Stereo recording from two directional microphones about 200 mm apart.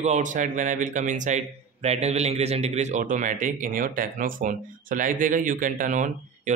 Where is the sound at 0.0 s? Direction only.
35° right (ahead or behind).